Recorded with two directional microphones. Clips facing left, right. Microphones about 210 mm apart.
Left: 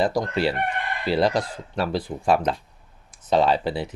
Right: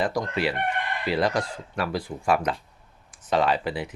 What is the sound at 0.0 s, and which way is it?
Speech, 30° left (ahead or behind).